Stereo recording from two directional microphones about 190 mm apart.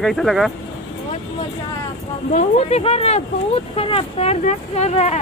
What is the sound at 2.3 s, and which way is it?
Speech, 35° left (ahead or behind).